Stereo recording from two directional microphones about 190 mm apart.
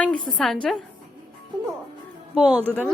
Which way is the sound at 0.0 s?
5° left (ahead or behind).